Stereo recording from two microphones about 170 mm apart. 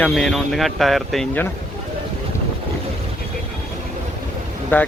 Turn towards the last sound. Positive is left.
turn(degrees=10)  # may be behind; listen again after turning